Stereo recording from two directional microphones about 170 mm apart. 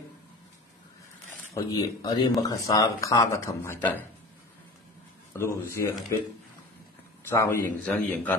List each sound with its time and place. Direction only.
1.5 s speech: 20° left (ahead or behind)
5.3 s a man's voice: 15° left (ahead or behind)
7.2 s a man's voice: 15° left (ahead or behind)